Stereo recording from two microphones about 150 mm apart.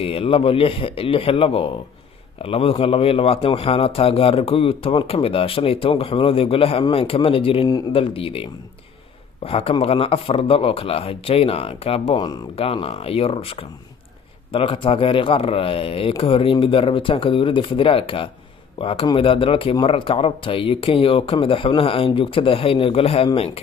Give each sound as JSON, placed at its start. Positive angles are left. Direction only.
{"t": 0.0, "sound": "speech", "side_deg": 40}